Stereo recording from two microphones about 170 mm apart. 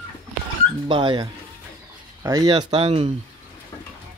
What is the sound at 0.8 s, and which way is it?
Speech, 30° right (ahead or behind).